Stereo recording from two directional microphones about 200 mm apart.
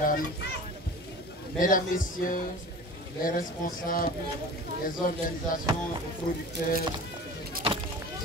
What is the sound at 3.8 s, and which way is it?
Speech, 45° left (ahead or behind).